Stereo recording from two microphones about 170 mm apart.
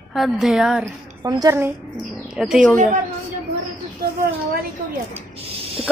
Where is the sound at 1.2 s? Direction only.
20° right (ahead or behind).